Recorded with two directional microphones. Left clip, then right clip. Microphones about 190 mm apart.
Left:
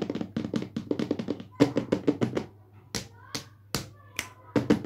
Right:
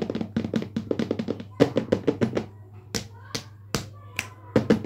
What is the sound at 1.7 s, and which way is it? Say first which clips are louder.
Music: right 3 dB; 5° left (ahead or behind).